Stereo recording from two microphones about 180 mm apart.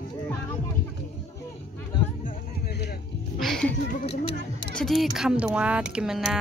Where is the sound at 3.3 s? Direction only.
Centre (ahead or behind).